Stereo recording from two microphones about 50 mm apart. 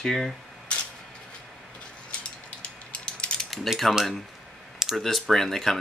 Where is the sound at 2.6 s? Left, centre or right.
Left.